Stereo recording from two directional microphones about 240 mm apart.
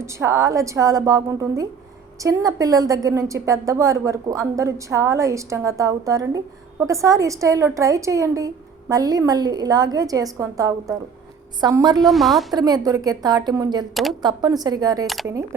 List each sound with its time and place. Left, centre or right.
0.0 s a woman's voice: centre
11.9 s a woman's voice: centre
12.5 s a woman's voice: centre
13.9 s a woman's voice: centre
14.2 s a woman's voice: centre
15.0 s a woman's voice: centre